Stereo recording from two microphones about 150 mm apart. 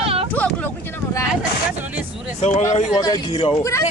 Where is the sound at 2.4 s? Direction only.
50° left (ahead or behind).